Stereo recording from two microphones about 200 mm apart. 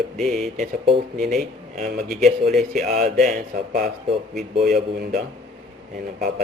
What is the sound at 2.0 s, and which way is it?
Speech, centre (ahead or behind).